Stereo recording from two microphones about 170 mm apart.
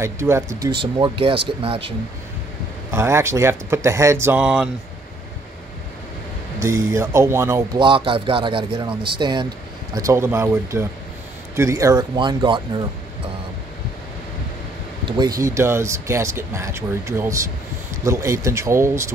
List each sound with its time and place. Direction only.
0.0 s speech: 15° right (ahead or behind); by 2.0 s 30° right (ahead or behind)
2.9 s speech: 15° right (ahead or behind)
6.6 s speech: 15° right (ahead or behind)
7.8 s a man's voice: 30° right (ahead or behind)
9.9 s a man's voice: 15° right (ahead or behind)
15.0 s speech: 25° right (ahead or behind)